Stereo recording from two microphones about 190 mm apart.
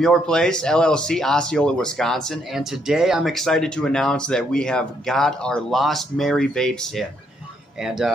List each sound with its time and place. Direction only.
0.0 s speech: 5° left (ahead or behind)